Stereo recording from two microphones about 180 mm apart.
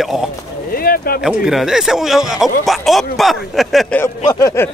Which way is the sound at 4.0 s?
15° left (ahead or behind).